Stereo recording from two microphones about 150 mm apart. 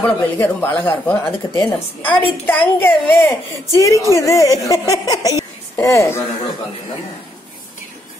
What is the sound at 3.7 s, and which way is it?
Speech, 20° left (ahead or behind).